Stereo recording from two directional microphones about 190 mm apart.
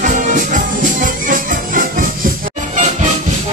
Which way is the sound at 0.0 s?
40° right (ahead or behind).